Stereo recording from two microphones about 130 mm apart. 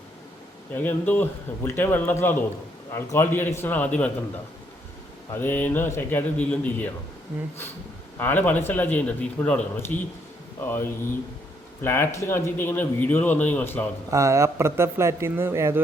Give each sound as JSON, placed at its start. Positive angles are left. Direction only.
{"t": 0.7, "sound": "speech", "side_deg": 15}
{"t": 5.3, "sound": "speech", "side_deg": 15}
{"t": 8.2, "sound": "speech", "side_deg": 15}
{"t": 14.1, "sound": "speech", "side_deg": -25}